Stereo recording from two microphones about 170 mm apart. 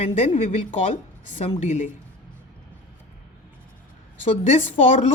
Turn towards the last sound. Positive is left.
turn(degrees=45)  # may be behind; listen again after turning